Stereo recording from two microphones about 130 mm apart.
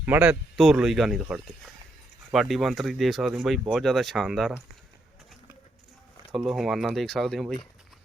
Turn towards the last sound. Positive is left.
turn(degrees=0)  # may be behind; listen again after turning